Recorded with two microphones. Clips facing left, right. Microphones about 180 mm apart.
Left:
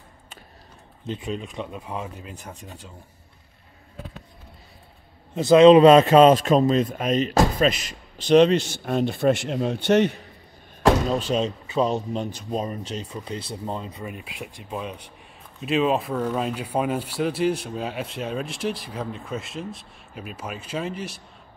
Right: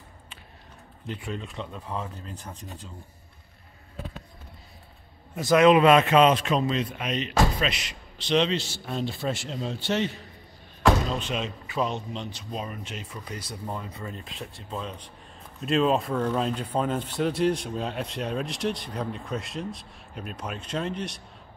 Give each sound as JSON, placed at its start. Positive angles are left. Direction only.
{"t": 1.0, "sound": "speech", "side_deg": 20}
{"t": 5.3, "sound": "a man's voice", "side_deg": 25}
{"t": 10.9, "sound": "speech", "side_deg": 35}
{"t": 15.6, "sound": "speech", "side_deg": 5}